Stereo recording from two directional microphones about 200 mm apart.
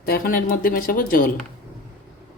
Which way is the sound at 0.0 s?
45° left (ahead or behind).